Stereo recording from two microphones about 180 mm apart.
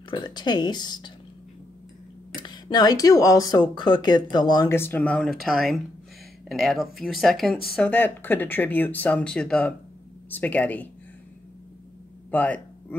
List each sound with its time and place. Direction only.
0.1 s speech: 25° left (ahead or behind)
2.3 s speech: 25° left (ahead or behind); by 10.9 s 10° left (ahead or behind)
12.3 s speech: 10° left (ahead or behind)